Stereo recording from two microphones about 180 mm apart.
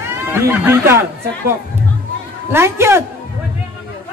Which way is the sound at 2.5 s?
15° right (ahead or behind).